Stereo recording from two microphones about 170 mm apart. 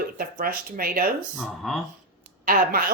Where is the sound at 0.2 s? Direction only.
60° right (ahead or behind).